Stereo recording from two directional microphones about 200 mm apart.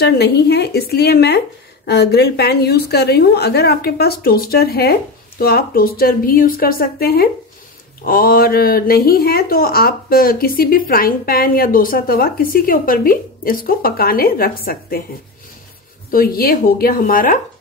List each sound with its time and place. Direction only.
0.0 s speech: 55° left (ahead or behind)
16.1 s speech: 45° left (ahead or behind)